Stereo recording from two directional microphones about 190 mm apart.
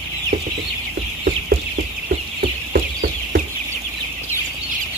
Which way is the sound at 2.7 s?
50° right (ahead or behind).